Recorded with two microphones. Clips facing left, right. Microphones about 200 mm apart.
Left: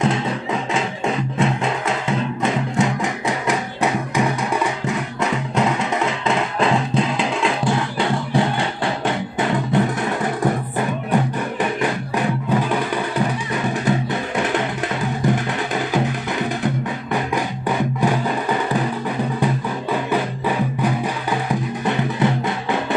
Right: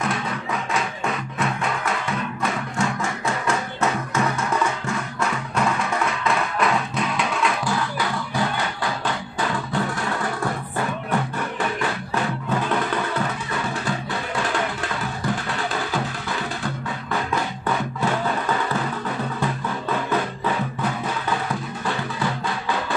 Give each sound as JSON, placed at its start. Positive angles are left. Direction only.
{"t": 0.0, "sound": "music", "side_deg": 25}
{"t": 12.4, "sound": "music", "side_deg": 15}